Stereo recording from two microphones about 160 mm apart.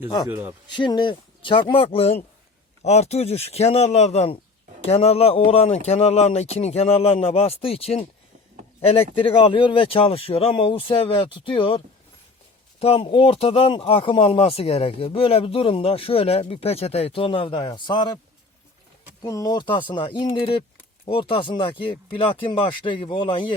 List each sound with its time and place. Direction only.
0.3 s a man's voice: 15° right (ahead or behind)
0.7 s speech: 30° left (ahead or behind)
12.8 s speech: 35° left (ahead or behind)
19.2 s speech: 25° left (ahead or behind)